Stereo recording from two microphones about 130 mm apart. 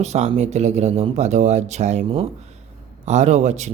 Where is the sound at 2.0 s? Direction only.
45° right (ahead or behind).